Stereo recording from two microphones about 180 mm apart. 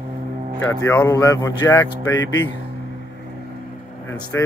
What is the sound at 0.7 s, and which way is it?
Speech, 15° left (ahead or behind).